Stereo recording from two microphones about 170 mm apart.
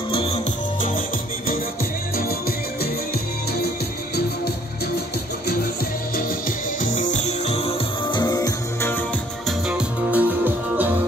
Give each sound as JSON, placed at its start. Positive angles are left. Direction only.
{"t": 0.1, "sound": "music", "side_deg": 35}
{"t": 6.8, "sound": "music", "side_deg": 50}
{"t": 9.7, "sound": "music", "side_deg": -5}